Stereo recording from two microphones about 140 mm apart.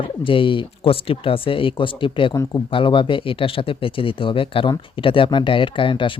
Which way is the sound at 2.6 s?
35° left (ahead or behind).